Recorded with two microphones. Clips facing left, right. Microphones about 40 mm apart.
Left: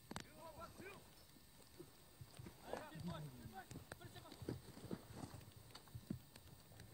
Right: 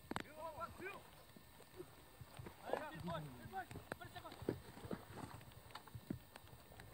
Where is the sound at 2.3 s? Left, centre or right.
Right.